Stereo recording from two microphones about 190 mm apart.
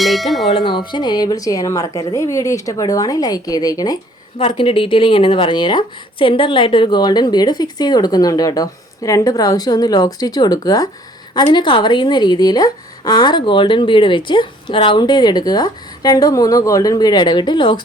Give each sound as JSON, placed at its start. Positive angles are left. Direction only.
{"t": 0.0, "sound": "tubular bells", "side_deg": 0}
{"t": 0.5, "sound": "speech", "side_deg": 25}